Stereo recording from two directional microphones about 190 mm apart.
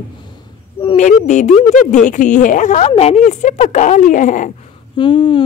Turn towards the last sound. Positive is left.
turn(degrees=25)  # may be behind; listen again after turning